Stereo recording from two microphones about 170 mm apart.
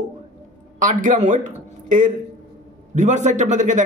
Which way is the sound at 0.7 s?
50° right (ahead or behind).